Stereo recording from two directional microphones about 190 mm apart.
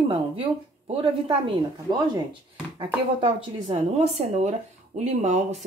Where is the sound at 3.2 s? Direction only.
30° right (ahead or behind).